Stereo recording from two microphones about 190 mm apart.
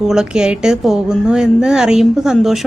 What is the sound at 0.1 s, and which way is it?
A woman's voice, 5° right (ahead or behind).